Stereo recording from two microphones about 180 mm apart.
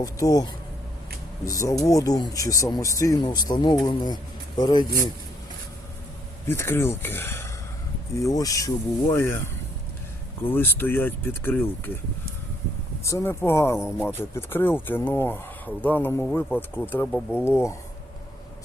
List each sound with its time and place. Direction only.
0.0 s speech: 20° left (ahead or behind)
6.5 s speech: 10° left (ahead or behind)
10.5 s speech: 10° left (ahead or behind)
13.1 s speech: 15° left (ahead or behind)
17.1 s speech: centre (ahead or behind)
17.4 s speech: 15° left (ahead or behind)